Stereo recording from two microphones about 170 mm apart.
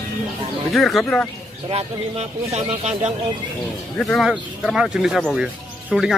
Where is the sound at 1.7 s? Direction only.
40° right (ahead or behind).